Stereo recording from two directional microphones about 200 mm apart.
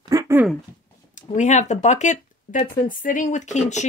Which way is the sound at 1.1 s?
35° left (ahead or behind).